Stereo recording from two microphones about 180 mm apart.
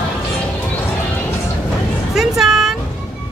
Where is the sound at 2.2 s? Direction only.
Centre (ahead or behind).